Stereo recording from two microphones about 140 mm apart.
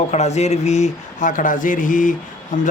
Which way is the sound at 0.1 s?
55° left (ahead or behind).